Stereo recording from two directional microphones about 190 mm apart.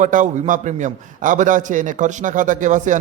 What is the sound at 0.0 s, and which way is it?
A man's voice, 45° right (ahead or behind).